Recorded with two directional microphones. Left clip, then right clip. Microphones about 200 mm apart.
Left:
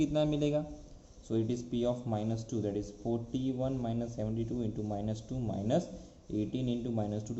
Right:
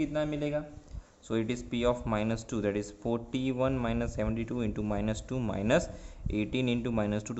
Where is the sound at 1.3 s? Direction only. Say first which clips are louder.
Right 1 dB; 25° right (ahead or behind).